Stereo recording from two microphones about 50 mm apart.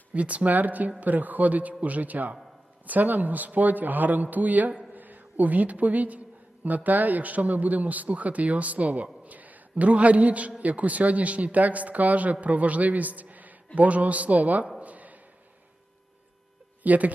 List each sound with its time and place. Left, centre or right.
0.1 s a man's voice: right
14.8 s a sound: right
16.8 s speech: right